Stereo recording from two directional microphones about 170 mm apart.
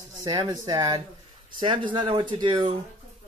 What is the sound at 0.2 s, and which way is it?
Speech, 25° right (ahead or behind).